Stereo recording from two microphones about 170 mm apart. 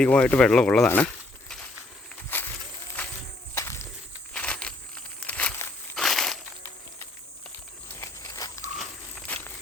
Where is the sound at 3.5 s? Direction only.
15° left (ahead or behind).